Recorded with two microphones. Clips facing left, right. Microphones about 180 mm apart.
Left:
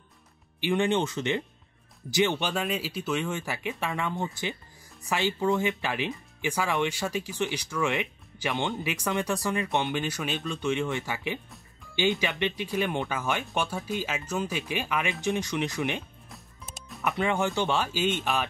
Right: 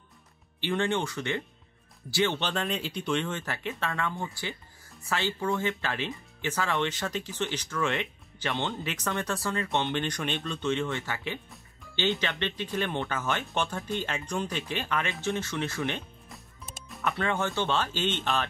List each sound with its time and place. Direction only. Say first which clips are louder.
0.6 s speech: left 3 dB; 15° left (ahead or behind)
16.3 s music: even; centre (ahead or behind)
17.2 s speech: left 3 dB; 15° left (ahead or behind)